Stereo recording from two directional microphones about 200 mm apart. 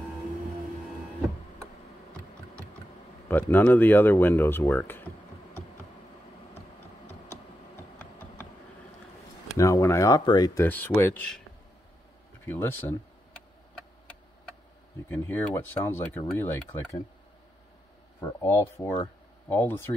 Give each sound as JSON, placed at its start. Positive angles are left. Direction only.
{"t": 3.3, "sound": "speech", "side_deg": 10}
{"t": 7.1, "sound": "a sound", "side_deg": 10}
{"t": 9.6, "sound": "speech", "side_deg": 15}
{"t": 12.4, "sound": "speech", "side_deg": 10}
{"t": 15.0, "sound": "speech", "side_deg": 10}
{"t": 18.4, "sound": "speech", "side_deg": 10}